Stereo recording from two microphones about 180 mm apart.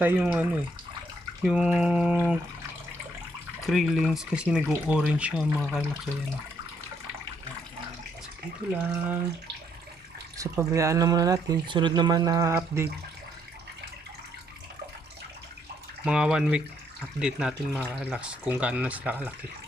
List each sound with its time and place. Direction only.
0.0 s speech: 10° right (ahead or behind)
3.7 s speech: centre (ahead or behind)
8.7 s speech: 10° right (ahead or behind)
10.3 s speech: 15° right (ahead or behind)
16.0 s speech: 5° right (ahead or behind)